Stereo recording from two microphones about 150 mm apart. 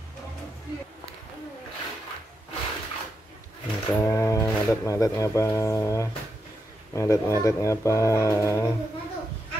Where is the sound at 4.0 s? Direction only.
20° left (ahead or behind).